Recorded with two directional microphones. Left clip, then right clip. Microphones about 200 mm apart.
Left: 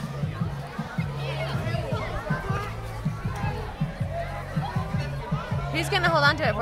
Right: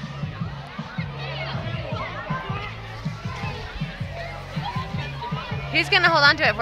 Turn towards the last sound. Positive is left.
turn(degrees=-15)  # may be behind; listen again after turning